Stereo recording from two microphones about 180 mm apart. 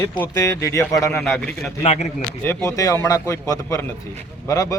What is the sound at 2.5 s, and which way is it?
Speech, 15° left (ahead or behind).